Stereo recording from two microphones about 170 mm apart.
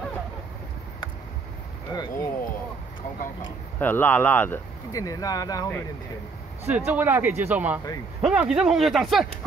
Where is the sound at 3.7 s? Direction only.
10° left (ahead or behind).